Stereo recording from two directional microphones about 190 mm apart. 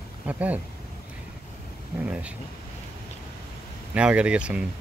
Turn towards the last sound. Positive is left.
turn(degrees=-5)  # may be behind; listen again after turning